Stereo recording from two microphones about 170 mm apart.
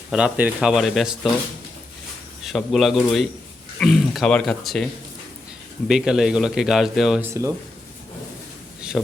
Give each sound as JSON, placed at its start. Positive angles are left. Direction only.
{"t": 0.1, "sound": "a man's voice", "side_deg": -5}
{"t": 2.4, "sound": "a man's voice", "side_deg": 0}
{"t": 5.9, "sound": "a man's voice", "side_deg": -5}
{"t": 7.2, "sound": "speech", "side_deg": -15}